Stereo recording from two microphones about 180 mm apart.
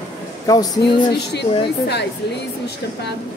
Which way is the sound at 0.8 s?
70° left (ahead or behind).